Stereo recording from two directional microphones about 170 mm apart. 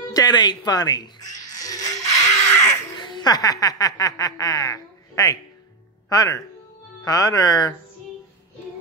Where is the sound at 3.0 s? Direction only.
25° left (ahead or behind).